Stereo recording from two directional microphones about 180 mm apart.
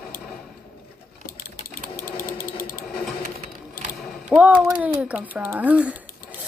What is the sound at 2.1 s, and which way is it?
Ratchet, 50° left (ahead or behind).